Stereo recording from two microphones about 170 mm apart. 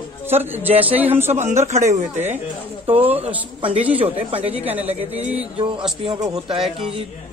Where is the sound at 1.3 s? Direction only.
45° right (ahead or behind).